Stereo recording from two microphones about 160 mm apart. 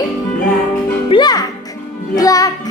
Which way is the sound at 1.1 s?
25° left (ahead or behind).